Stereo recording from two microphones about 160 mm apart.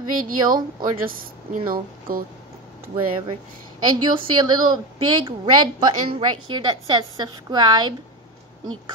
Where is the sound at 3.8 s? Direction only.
25° right (ahead or behind).